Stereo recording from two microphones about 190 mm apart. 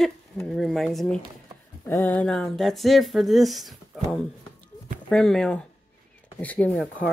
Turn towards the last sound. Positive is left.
turn(degrees=5)  # may be behind; listen again after turning